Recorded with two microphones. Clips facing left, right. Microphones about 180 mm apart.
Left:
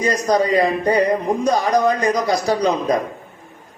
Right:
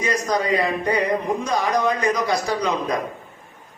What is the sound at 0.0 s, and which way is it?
Speech, 35° left (ahead or behind).